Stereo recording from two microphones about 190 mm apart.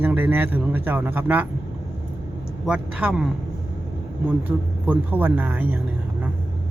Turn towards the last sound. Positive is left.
turn(degrees=-10)  # may be behind; listen again after turning